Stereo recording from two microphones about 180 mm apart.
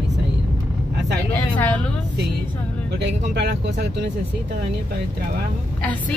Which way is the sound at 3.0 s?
75° right (ahead or behind).